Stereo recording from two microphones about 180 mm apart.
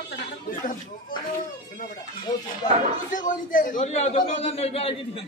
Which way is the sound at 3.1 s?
50° left (ahead or behind).